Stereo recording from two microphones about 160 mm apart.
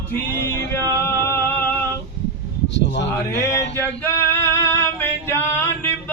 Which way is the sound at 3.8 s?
15° left (ahead or behind).